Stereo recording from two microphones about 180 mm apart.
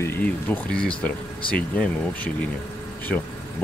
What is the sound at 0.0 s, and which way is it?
Speech, 10° left (ahead or behind).